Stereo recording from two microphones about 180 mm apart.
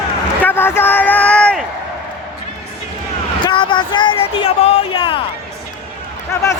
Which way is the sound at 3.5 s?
25° left (ahead or behind).